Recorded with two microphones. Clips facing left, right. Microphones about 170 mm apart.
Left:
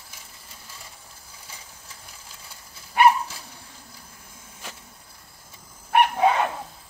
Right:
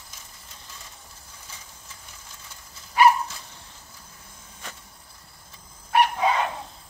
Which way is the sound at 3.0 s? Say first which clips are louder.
Even; 60° left (ahead or behind).